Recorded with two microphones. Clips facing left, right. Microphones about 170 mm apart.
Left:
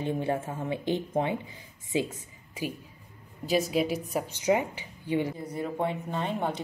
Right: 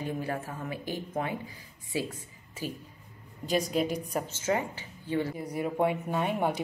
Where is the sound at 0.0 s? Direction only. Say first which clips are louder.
Left 4 dB; 25° left (ahead or behind).